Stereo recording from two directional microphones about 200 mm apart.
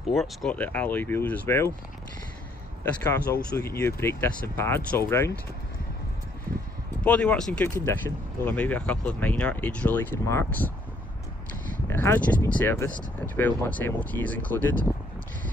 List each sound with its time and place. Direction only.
0.1 s speech: centre (ahead or behind)
3.0 s speech: 15° left (ahead or behind)
7.1 s speech: 5° left (ahead or behind)
11.9 s speech: 10° left (ahead or behind)